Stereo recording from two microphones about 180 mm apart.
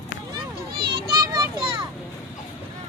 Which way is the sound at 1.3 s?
20° right (ahead or behind).